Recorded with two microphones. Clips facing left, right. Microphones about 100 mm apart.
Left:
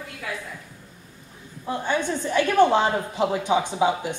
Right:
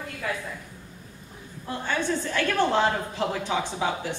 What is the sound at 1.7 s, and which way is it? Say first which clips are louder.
A woman's voice: left 3 dB; 15° left (ahead or behind).